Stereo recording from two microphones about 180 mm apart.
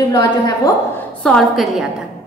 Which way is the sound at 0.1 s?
20° left (ahead or behind).